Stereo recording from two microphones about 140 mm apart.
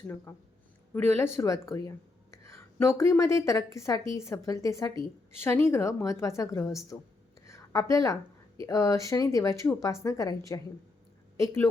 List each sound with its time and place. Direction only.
0.3 s a woman's voice: 15° left (ahead or behind)
7.4 s a sound: 20° left (ahead or behind)
8.6 s a woman's voice: 25° left (ahead or behind)